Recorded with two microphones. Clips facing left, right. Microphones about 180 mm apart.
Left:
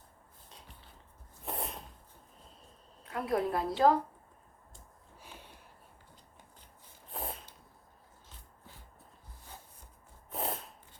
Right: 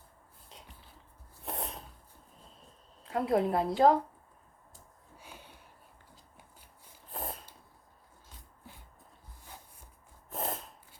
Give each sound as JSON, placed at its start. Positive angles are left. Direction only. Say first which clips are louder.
{"t": 1.5, "sound": "sneeze", "louder": "even", "side_deg": 0}
{"t": 3.1, "sound": "a woman's voice", "louder": "right 3 dB", "side_deg": -25}
{"t": 5.1, "sound": "a sound", "louder": "right 1 dB", "side_deg": 0}
{"t": 7.1, "sound": "snort", "louder": "right 1 dB", "side_deg": 0}
{"t": 10.3, "sound": "snort", "louder": "even", "side_deg": 0}